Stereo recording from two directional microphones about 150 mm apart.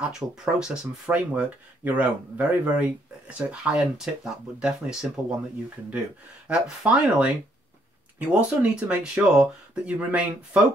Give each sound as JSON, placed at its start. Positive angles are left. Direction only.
{"t": 0.0, "sound": "speech", "side_deg": -5}
{"t": 6.4, "sound": "speech", "side_deg": -5}